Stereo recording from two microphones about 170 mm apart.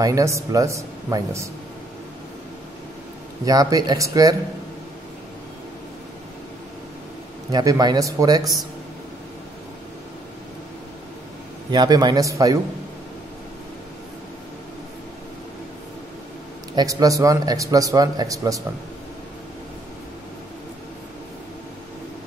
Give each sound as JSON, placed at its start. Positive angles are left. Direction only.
{"t": 0.0, "sound": "speech", "side_deg": -20}
{"t": 3.4, "sound": "speech", "side_deg": -20}
{"t": 7.5, "sound": "speech", "side_deg": -20}
{"t": 11.7, "sound": "speech", "side_deg": -25}
{"t": 16.7, "sound": "speech", "side_deg": -20}